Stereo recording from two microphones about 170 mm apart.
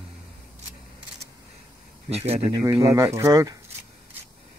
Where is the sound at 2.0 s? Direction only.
35° right (ahead or behind).